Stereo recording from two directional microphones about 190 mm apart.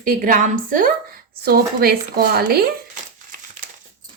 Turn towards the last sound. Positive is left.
turn(degrees=-50)  # may be behind; listen again after turning